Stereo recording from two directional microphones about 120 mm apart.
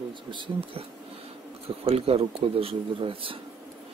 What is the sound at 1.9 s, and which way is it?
A man's voice, 55° right (ahead or behind).